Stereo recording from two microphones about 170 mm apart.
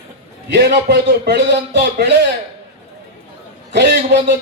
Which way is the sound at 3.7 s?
85° right.